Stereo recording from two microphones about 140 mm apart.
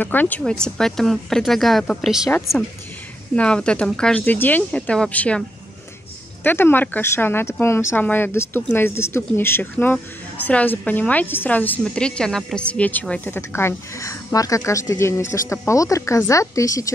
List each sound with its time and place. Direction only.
0.0 s a woman's voice: 10° left (ahead or behind)
3.3 s a woman's voice: 5° left (ahead or behind)
6.4 s a woman's voice: 15° left (ahead or behind)